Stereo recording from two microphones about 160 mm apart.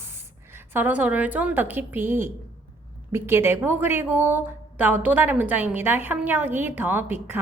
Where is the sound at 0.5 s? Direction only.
15° right (ahead or behind).